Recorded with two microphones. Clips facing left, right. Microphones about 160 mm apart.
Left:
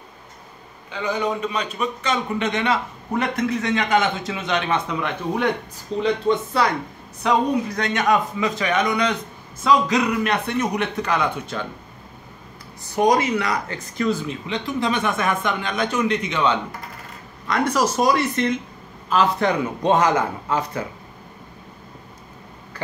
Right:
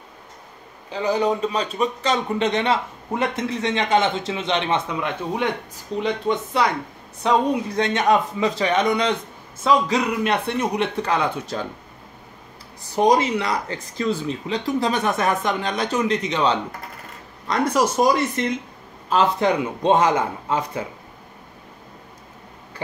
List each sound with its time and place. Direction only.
0.8 s a man's voice: 35° right (ahead or behind)
5.9 s speech: 15° right (ahead or behind)
7.2 s a man's voice: 25° right (ahead or behind)
13.0 s a man's voice: 25° right (ahead or behind)
14.5 s a man's voice: 40° right (ahead or behind); by 20.8 s 25° right (ahead or behind)